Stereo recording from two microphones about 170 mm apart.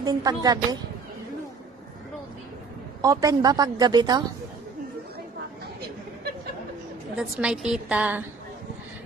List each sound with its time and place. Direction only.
0.0 s speech: 20° right (ahead or behind)
3.0 s speech: 20° right (ahead or behind)
7.2 s a woman's voice: 5° right (ahead or behind)